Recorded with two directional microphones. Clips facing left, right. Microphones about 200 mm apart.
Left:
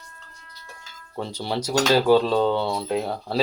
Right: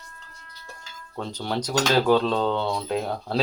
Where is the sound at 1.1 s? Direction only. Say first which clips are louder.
Left 1 dB; 10° left (ahead or behind).